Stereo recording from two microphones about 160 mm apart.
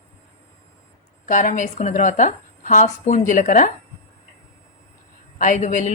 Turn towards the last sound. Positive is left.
turn(degrees=50)  # may be behind; listen again after turning